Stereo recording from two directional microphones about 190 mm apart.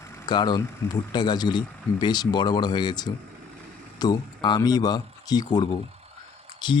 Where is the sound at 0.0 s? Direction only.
20° left (ahead or behind).